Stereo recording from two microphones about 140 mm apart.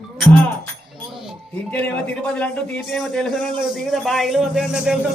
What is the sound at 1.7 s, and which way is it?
Music, 10° left (ahead or behind).